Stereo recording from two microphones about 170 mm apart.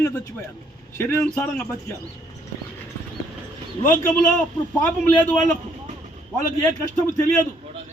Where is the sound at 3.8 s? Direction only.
50° left (ahead or behind).